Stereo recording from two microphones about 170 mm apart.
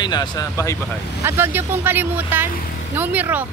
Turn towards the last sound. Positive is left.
turn(degrees=-10)  # may be behind; listen again after turning